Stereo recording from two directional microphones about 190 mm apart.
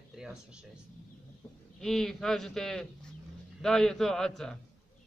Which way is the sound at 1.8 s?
Centre (ahead or behind).